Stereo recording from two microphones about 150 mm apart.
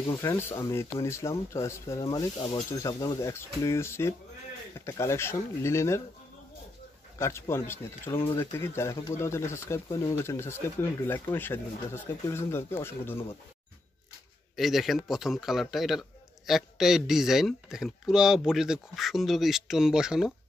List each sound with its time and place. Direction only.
0.2 s speech: 15° left (ahead or behind)
7.2 s speech: 20° left (ahead or behind)
14.5 s a man's voice: centre (ahead or behind)